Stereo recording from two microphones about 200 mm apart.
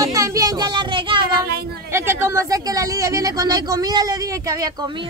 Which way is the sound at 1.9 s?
15° right (ahead or behind).